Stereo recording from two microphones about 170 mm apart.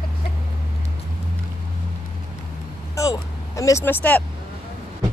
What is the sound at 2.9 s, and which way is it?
Speech, 20° left (ahead or behind).